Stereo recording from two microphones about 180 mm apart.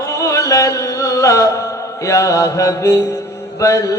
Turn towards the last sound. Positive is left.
turn(degrees=15)  # may be behind; listen again after turning